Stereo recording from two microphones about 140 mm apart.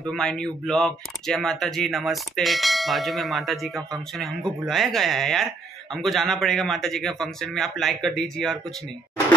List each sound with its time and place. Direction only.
0.1 s speech: 5° left (ahead or behind)